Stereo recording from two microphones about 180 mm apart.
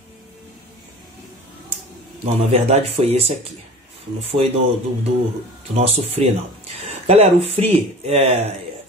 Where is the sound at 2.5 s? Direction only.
35° right (ahead or behind).